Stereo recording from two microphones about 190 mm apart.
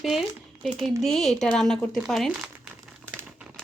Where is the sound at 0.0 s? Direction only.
Centre (ahead or behind).